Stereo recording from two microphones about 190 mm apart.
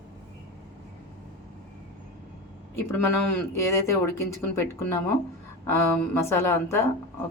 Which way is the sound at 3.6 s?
15° left (ahead or behind).